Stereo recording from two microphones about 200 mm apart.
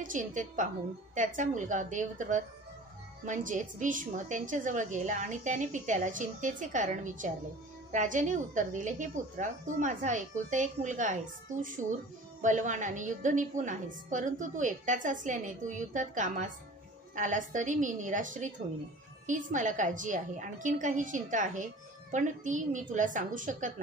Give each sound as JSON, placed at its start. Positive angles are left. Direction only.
{"t": 0.0, "sound": "a woman's voice", "side_deg": -40}